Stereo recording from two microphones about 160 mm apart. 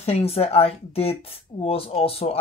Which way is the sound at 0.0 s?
40° left (ahead or behind).